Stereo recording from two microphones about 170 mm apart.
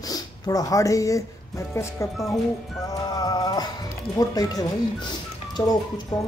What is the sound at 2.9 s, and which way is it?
Music, 20° left (ahead or behind).